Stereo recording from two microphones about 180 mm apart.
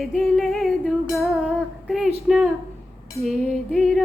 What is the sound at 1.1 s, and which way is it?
Female singing, centre (ahead or behind).